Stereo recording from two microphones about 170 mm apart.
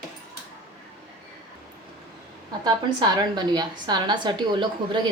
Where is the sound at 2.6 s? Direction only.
25° right (ahead or behind).